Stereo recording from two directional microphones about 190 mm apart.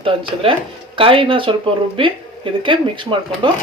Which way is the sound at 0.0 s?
30° right (ahead or behind).